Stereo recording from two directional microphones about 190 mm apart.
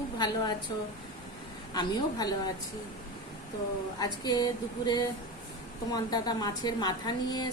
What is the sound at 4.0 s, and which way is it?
A woman's voice, 20° left (ahead or behind).